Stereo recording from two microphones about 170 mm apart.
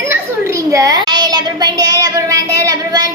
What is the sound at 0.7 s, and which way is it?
Child singing, 20° right (ahead or behind).